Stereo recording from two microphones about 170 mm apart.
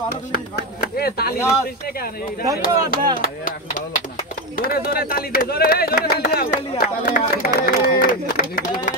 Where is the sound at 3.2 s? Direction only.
55° left (ahead or behind).